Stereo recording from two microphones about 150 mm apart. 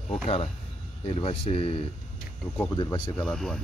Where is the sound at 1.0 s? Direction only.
40° left (ahead or behind).